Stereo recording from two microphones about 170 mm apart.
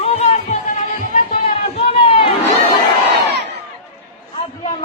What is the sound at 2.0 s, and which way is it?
Run, 30° left (ahead or behind).